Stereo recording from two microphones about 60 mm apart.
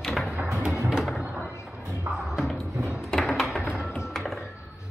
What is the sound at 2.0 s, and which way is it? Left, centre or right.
Music, centre.